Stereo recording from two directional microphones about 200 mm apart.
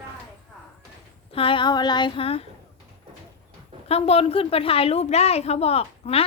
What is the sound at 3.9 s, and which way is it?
A woman's voice, 30° left (ahead or behind).